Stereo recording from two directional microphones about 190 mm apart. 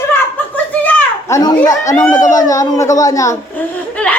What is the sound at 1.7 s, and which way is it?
A child's voice, 15° left (ahead or behind).